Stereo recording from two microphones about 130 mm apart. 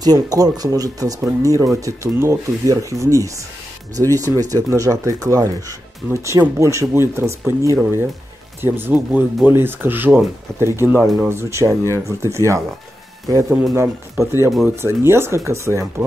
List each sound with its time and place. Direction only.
0.0 s speech: 30° right (ahead or behind)